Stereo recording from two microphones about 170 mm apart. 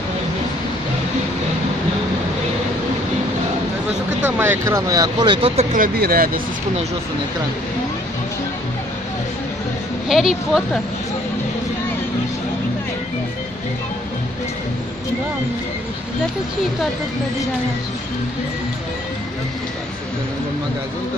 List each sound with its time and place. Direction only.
4.4 s speech: 15° right (ahead or behind); by 5.7 s 30° right (ahead or behind)
5.7 s speech: 55° right (ahead or behind)
10.0 s speech: centre (ahead or behind)